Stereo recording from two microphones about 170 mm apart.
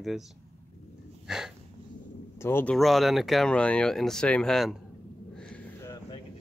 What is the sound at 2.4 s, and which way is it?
Speech, 15° left (ahead or behind).